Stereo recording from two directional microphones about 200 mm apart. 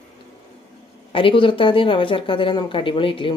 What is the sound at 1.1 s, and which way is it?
Speech, 25° left (ahead or behind).